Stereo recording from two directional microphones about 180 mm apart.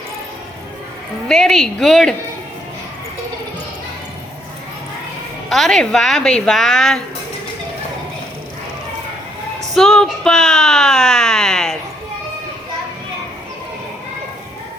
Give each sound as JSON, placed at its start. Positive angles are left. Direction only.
{"t": 1.3, "sound": "speech", "side_deg": 0}
{"t": 5.5, "sound": "speech", "side_deg": 0}
{"t": 9.7, "sound": "speech", "side_deg": 0}